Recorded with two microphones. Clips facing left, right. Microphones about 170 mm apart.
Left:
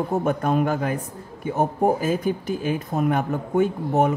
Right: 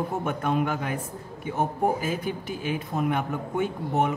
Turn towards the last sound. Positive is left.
turn(degrees=40)  # may be behind; listen again after turning